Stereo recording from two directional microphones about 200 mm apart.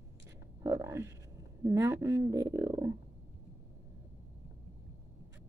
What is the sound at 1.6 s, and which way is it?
Speech, 15° right (ahead or behind).